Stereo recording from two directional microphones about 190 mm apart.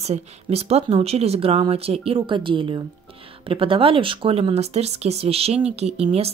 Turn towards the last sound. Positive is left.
turn(degrees=-30)  # may be behind; listen again after turning